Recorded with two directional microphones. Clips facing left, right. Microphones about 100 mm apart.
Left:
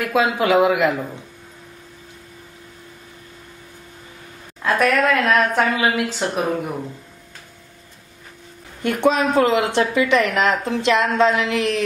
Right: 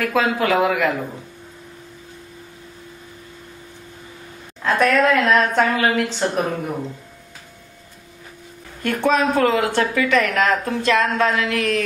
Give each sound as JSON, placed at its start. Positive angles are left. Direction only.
{"t": 0.0, "sound": "speech", "side_deg": 20}
{"t": 4.6, "sound": "a woman's voice", "side_deg": 5}
{"t": 8.8, "sound": "speech", "side_deg": 20}